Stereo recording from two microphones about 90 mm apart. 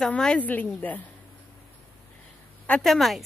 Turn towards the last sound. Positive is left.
turn(degrees=0)  # may be behind; listen again after turning